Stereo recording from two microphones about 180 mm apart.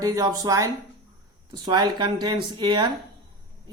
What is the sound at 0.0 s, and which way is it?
Speech, 20° right (ahead or behind).